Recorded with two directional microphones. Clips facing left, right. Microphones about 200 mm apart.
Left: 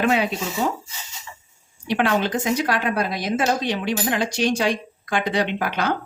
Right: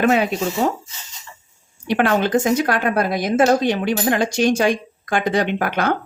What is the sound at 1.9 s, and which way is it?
A woman's voice, 50° right (ahead or behind).